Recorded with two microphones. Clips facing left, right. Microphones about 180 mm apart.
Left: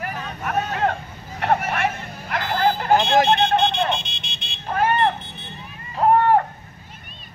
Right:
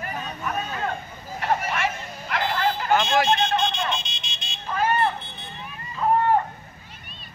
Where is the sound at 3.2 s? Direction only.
60° left (ahead or behind).